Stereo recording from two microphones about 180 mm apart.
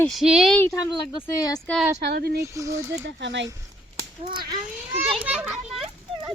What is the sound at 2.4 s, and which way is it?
Speech, 15° right (ahead or behind).